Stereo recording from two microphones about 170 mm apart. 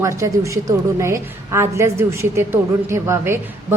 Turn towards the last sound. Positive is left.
turn(degrees=-15)  # may be behind; listen again after turning